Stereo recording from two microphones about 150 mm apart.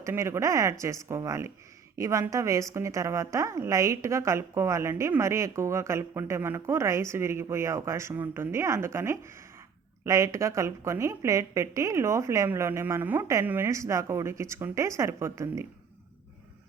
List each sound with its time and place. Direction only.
0.0 s a woman's voice: 20° right (ahead or behind)